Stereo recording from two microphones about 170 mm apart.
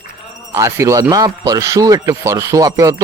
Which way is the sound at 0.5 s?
15° right (ahead or behind).